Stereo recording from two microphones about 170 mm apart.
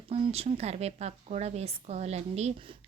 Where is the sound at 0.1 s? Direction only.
35° right (ahead or behind).